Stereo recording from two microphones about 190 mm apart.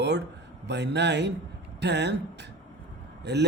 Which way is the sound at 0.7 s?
65° right (ahead or behind).